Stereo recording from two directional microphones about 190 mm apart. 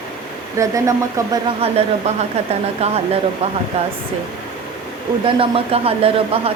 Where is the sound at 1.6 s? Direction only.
30° right (ahead or behind).